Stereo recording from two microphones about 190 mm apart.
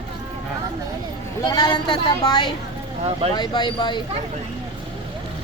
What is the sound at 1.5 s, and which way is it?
Speech, 20° left (ahead or behind).